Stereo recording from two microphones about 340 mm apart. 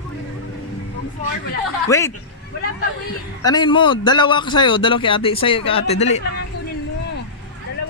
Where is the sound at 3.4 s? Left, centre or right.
Centre.